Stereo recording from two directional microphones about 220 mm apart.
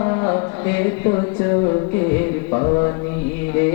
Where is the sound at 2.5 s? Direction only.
25° left (ahead or behind).